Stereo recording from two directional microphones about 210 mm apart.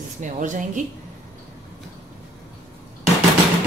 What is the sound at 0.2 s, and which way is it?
Speech, 35° right (ahead or behind).